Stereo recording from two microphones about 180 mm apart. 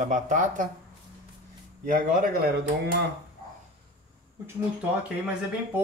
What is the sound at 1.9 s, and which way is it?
Speech, 50° right (ahead or behind).